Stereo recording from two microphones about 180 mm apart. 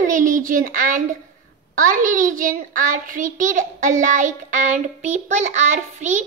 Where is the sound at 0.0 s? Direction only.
45° right (ahead or behind).